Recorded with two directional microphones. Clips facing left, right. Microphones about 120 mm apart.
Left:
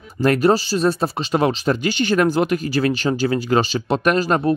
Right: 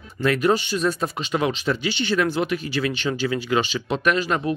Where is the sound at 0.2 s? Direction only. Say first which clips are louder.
Left 4 dB; 40° left (ahead or behind).